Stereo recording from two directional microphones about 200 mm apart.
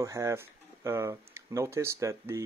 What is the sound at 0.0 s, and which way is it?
Speech, 15° right (ahead or behind).